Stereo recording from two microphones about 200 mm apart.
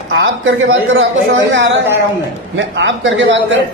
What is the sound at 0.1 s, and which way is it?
A man's voice, 75° right (ahead or behind).